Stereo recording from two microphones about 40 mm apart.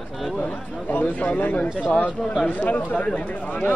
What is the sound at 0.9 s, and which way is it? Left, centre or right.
Speech, left.